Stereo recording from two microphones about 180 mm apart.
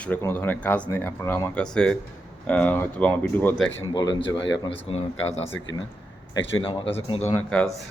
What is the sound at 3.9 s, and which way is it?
Speech, 25° left (ahead or behind).